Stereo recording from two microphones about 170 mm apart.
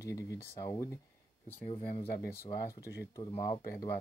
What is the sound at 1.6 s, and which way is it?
Speech, 30° left (ahead or behind).